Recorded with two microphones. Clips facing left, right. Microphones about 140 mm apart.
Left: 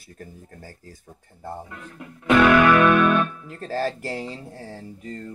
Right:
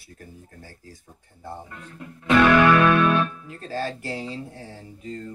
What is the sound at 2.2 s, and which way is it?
Music, 10° left (ahead or behind).